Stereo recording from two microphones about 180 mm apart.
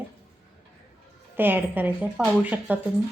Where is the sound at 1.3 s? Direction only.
10° right (ahead or behind).